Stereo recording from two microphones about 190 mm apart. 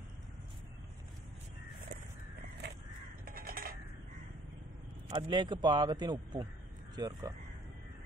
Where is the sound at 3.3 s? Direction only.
50° right (ahead or behind).